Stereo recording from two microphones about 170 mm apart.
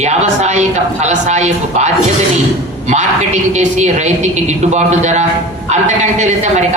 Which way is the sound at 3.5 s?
40° right (ahead or behind).